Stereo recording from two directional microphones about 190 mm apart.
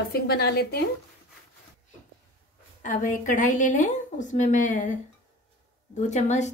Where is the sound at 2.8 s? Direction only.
40° left (ahead or behind).